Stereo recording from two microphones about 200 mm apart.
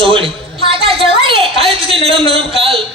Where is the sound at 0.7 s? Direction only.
25° right (ahead or behind).